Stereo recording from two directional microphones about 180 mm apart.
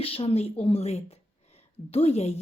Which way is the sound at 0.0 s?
30° left (ahead or behind).